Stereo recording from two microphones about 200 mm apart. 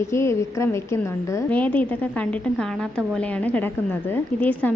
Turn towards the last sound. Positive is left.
turn(degrees=5)  # may be behind; listen again after turning